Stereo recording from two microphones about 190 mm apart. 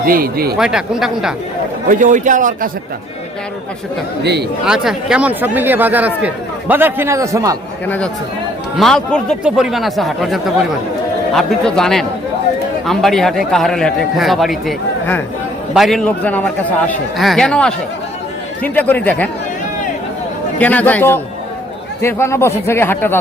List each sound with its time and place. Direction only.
0.0 s a man's voice: 50° right (ahead or behind)
0.5 s a man's voice: 5° right (ahead or behind)
1.9 s a man's voice: 45° right (ahead or behind)
4.2 s speech: 60° right (ahead or behind)
4.6 s speech: 5° right (ahead or behind)
7.9 s a man's voice: 5° left (ahead or behind)
20.6 s speech: 10° left (ahead or behind)